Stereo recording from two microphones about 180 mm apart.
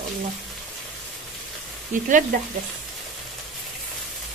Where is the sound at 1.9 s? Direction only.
45° right (ahead or behind).